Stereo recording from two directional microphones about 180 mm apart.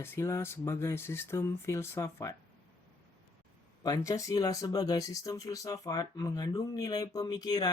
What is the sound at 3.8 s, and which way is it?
Speech, 20° left (ahead or behind).